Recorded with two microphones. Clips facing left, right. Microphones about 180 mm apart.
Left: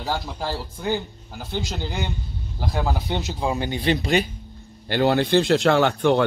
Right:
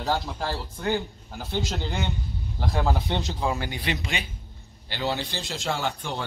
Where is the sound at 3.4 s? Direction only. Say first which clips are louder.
Left 7 dB; 20° left (ahead or behind); by 4.3 s 40° left (ahead or behind).